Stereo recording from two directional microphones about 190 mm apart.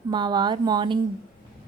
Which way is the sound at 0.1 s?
25° right (ahead or behind).